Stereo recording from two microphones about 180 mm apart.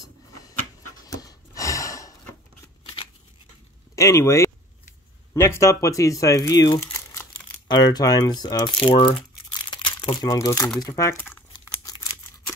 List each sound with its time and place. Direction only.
0.5 s pant: 20° left (ahead or behind)
2.8 s scissors: 30° left (ahead or behind)
3.9 s speech: 15° left (ahead or behind)
6.9 s crumpling: 10° left (ahead or behind)
7.6 s speech: 25° left (ahead or behind)
9.5 s crumpling: 25° left (ahead or behind)
10.8 s speech: 20° left (ahead or behind)
11.5 s crumpling: 20° left (ahead or behind)